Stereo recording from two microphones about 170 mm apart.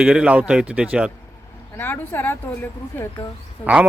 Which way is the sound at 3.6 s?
10° right (ahead or behind).